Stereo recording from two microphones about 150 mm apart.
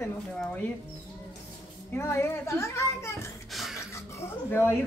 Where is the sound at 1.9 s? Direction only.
20° left (ahead or behind).